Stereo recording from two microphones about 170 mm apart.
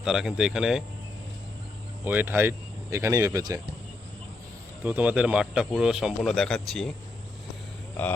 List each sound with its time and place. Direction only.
0.0 s speech: 5° right (ahead or behind)
2.0 s speech: 10° right (ahead or behind)
4.8 s speech: 10° right (ahead or behind)